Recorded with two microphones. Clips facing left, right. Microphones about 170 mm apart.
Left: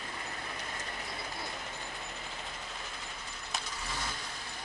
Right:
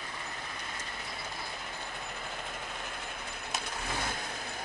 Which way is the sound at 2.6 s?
60° right (ahead or behind).